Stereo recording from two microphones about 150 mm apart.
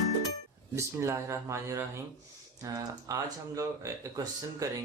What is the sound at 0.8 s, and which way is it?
Speech, 20° right (ahead or behind).